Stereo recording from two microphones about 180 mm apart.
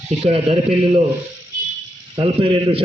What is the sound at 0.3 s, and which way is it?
Speech, 35° right (ahead or behind).